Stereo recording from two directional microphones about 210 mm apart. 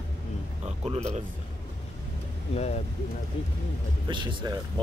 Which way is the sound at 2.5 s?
30° left (ahead or behind).